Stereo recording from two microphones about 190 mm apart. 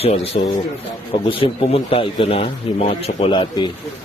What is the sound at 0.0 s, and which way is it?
A man's voice, 30° left (ahead or behind).